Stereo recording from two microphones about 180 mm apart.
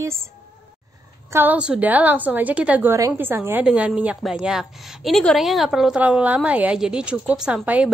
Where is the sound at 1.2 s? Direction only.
10° right (ahead or behind).